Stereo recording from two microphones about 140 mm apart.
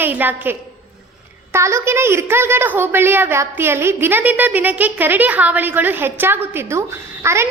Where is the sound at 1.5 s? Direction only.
20° right (ahead or behind).